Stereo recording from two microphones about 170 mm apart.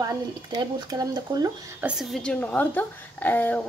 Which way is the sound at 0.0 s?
25° right (ahead or behind).